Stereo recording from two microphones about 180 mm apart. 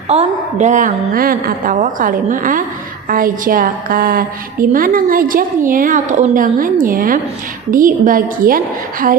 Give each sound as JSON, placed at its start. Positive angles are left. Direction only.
{"t": 0.1, "sound": "a woman's voice", "side_deg": -40}